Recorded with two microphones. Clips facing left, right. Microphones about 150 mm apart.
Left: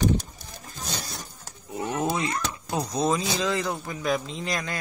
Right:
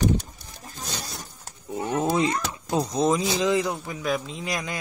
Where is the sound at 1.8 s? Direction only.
30° right (ahead or behind).